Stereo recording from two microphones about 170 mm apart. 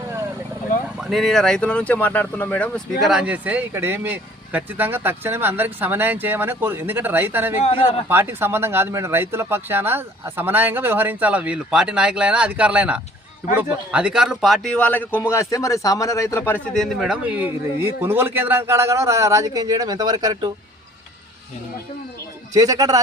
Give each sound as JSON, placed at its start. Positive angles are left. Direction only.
{"t": 1.0, "sound": "a man's voice", "side_deg": 0}
{"t": 3.0, "sound": "a man's voice", "side_deg": -5}
{"t": 16.7, "sound": "speech", "side_deg": 0}
{"t": 22.5, "sound": "a man's voice", "side_deg": -20}